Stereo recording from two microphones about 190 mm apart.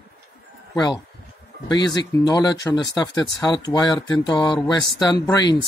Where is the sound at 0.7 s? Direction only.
20° left (ahead or behind).